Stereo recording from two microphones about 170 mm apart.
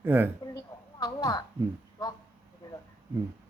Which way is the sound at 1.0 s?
25° left (ahead or behind).